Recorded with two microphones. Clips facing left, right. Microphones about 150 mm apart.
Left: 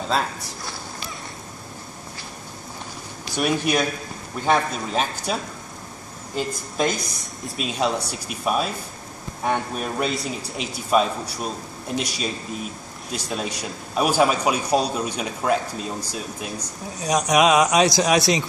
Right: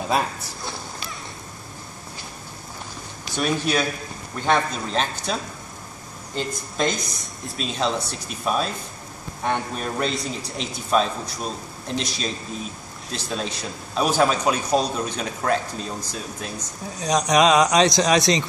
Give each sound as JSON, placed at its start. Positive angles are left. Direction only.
{"t": 0.1, "sound": "speech", "side_deg": -15}
{"t": 3.3, "sound": "a man's voice", "side_deg": 10}